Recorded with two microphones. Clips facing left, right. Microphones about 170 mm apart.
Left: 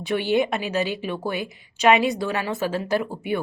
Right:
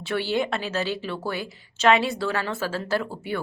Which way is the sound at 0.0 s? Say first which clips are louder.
Left 4 dB; 15° left (ahead or behind).